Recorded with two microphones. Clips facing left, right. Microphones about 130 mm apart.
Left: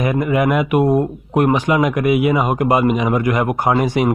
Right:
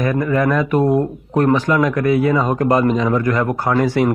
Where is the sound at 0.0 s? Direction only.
15° left (ahead or behind).